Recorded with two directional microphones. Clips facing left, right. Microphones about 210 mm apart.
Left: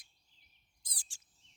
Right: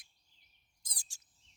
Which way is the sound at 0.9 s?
40° right (ahead or behind).